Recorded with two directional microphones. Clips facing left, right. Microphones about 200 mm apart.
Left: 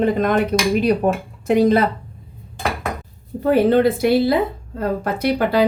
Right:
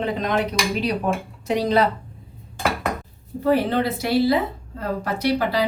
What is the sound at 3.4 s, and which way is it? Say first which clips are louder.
Speech: left 5 dB; 55° left (ahead or behind).